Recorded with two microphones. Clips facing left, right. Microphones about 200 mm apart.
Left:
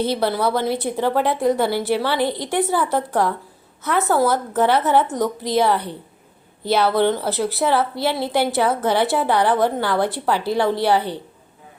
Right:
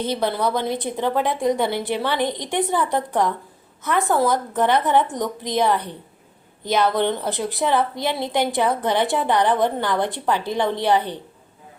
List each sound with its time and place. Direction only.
0.0 s a woman's voice: 10° left (ahead or behind)